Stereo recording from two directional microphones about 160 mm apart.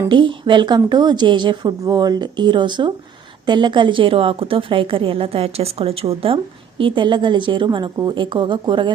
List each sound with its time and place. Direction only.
0.1 s a woman's voice: 30° right (ahead or behind)